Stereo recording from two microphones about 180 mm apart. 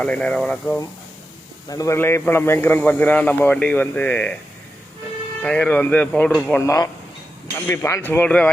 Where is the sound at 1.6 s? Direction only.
20° left (ahead or behind).